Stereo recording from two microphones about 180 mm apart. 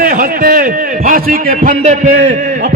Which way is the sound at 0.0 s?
60° right (ahead or behind).